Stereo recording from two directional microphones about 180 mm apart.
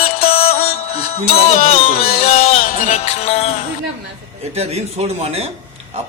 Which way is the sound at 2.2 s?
35° left (ahead or behind).